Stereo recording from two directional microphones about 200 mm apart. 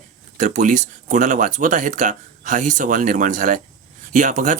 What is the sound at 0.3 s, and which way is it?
Speech, 40° right (ahead or behind).